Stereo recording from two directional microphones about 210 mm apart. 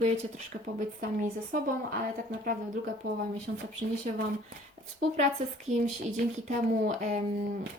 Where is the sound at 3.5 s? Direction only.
55° right (ahead or behind).